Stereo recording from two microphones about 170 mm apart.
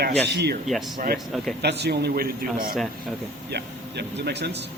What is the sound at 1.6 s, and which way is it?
Speech, 75° right (ahead or behind).